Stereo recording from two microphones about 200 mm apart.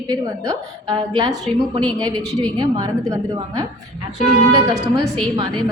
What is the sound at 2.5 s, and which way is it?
A woman's voice, 20° right (ahead or behind).